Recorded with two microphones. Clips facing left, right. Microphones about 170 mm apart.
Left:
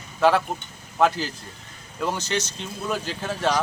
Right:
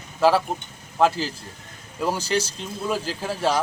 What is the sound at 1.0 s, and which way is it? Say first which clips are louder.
Speech: right 1 dB; centre (ahead or behind).